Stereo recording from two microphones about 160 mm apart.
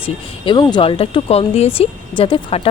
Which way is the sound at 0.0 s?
30° left (ahead or behind).